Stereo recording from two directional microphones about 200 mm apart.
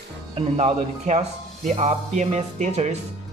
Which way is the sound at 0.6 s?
35° right (ahead or behind).